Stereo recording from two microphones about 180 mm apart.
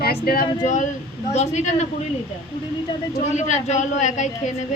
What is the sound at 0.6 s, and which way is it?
Speech, 40° left (ahead or behind).